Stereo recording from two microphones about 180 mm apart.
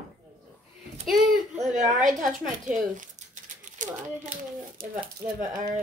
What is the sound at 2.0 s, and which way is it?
Speech, 45° right (ahead or behind).